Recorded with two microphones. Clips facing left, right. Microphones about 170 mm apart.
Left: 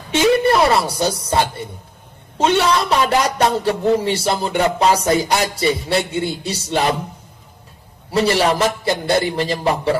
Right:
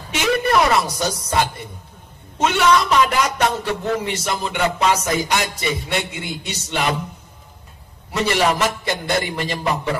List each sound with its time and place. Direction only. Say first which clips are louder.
0.1 s a woman's voice: left 4 dB; 30° left (ahead or behind)
8.1 s a man's voice: left 3 dB; 35° left (ahead or behind)